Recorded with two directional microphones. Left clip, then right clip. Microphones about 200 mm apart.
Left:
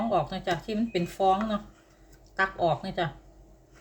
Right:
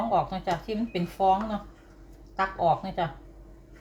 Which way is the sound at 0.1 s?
30° left (ahead or behind).